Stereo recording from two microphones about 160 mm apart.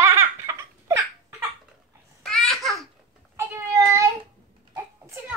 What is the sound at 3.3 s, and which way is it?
Cat, 15° right (ahead or behind).